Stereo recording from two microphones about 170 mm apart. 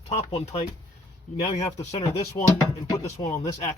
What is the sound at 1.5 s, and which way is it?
Speech, 20° left (ahead or behind).